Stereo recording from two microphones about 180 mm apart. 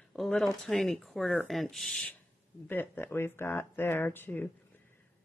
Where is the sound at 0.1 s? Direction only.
Centre (ahead or behind).